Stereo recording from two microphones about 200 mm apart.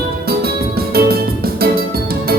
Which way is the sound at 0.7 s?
50° right (ahead or behind).